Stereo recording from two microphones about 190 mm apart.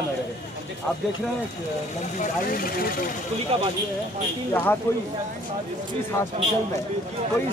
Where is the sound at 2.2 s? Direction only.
50° left (ahead or behind).